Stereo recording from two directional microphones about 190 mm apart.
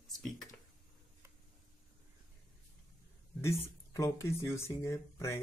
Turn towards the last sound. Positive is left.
turn(degrees=15)  # may be behind; listen again after turning